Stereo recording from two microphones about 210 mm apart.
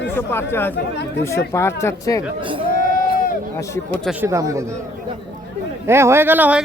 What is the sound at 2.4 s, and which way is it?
Speech, 25° right (ahead or behind).